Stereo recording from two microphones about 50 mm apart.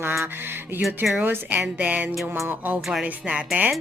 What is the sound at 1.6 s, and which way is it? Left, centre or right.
A woman's voice, right.